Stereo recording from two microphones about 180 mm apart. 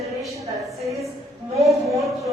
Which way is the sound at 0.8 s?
Centre (ahead or behind).